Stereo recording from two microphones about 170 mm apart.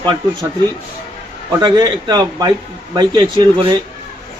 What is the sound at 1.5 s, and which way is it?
A man's voice, 25° right (ahead or behind).